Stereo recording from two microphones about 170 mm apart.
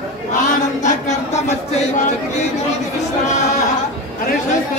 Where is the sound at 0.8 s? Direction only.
45° left (ahead or behind).